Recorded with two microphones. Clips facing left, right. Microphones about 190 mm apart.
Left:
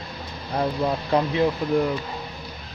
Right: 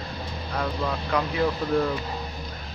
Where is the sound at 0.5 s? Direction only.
30° left (ahead or behind).